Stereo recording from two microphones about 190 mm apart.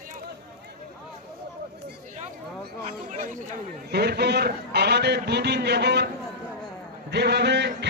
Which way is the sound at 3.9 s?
60° right (ahead or behind).